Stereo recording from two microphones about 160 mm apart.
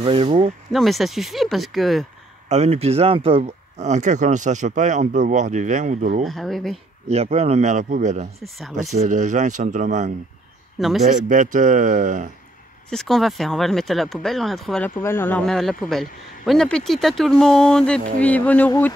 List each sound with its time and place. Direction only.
0.0 s speech: 35° right (ahead or behind)
0.7 s speech: centre (ahead or behind)
2.5 s speech: 40° right (ahead or behind)
6.2 s speech: centre (ahead or behind)
7.1 s speech: 40° right (ahead or behind)
8.4 s speech: centre (ahead or behind)
9.0 s speech: 50° right (ahead or behind)
12.9 s speech: centre (ahead or behind)
15.0 s speech: 15° left (ahead or behind)